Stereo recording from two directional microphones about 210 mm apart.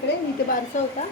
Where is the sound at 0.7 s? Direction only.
35° left (ahead or behind).